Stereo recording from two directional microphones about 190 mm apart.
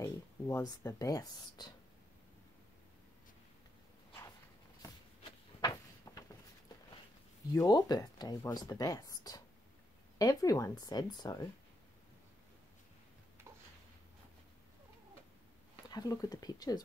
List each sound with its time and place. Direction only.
0.0 s speech: 15° left (ahead or behind)
6.1 s a sound: 20° left (ahead or behind)
7.5 s speech: 20° left (ahead or behind)
15.9 s speech: 20° left (ahead or behind)